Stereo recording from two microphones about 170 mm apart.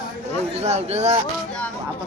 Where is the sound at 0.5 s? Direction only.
40° right (ahead or behind).